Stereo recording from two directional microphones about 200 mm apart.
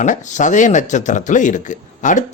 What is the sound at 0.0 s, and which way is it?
Speech, 40° left (ahead or behind).